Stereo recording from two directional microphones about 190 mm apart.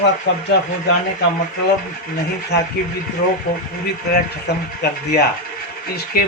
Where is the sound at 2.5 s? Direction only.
60° left (ahead or behind).